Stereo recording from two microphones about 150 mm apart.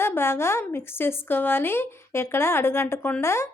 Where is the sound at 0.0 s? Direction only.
15° left (ahead or behind).